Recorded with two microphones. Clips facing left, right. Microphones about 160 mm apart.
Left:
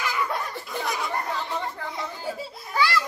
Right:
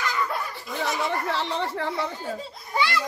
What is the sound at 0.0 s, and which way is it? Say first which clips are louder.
Laughter: even; 10° left (ahead or behind).